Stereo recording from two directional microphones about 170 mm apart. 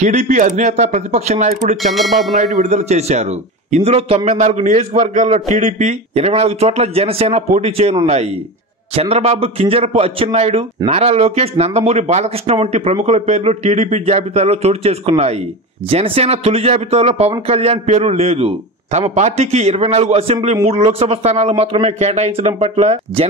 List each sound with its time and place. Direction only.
0.0 s speech: 45° right (ahead or behind)
2.0 s a sound: centre (ahead or behind)
2.3 s speech: 40° right (ahead or behind)